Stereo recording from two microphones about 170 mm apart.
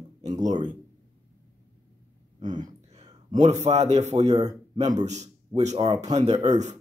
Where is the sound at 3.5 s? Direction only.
40° right (ahead or behind).